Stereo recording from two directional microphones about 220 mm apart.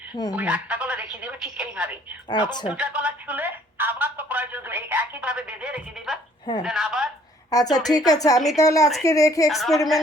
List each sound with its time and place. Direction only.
0.3 s a woman's voice: 5° right (ahead or behind)
2.3 s speech: 20° left (ahead or behind)
2.6 s a woman's voice: 5° right (ahead or behind)
7.5 s speech: 15° left (ahead or behind)
9.5 s a woman's voice: centre (ahead or behind)